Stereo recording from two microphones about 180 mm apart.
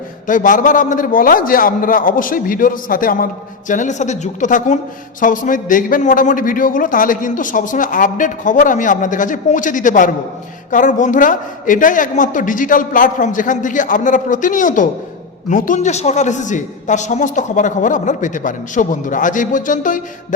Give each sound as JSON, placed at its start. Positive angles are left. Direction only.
{"t": 0.3, "sound": "a man's voice", "side_deg": 45}